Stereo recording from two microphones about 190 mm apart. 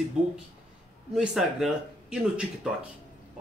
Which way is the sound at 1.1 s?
Centre (ahead or behind).